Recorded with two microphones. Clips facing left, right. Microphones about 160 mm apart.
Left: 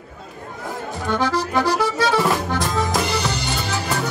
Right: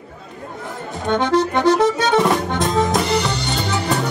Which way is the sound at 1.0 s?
25° right (ahead or behind).